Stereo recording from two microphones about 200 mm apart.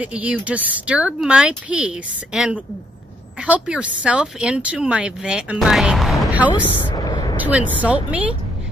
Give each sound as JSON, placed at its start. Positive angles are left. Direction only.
{"t": 0.0, "sound": "a woman's voice", "side_deg": -5}
{"t": 7.0, "sound": "a sound", "side_deg": 20}
{"t": 7.3, "sound": "speech", "side_deg": -10}